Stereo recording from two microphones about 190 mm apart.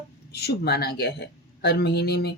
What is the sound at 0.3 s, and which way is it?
Speech, 60° left (ahead or behind).